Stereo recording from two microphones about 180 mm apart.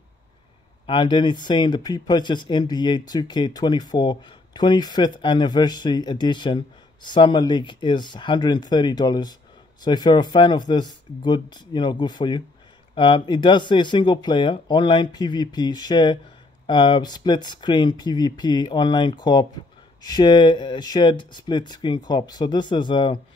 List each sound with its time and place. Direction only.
0.8 s speech: 25° left (ahead or behind)